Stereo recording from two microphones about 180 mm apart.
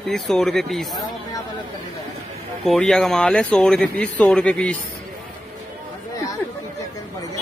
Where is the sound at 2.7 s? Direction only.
Centre (ahead or behind).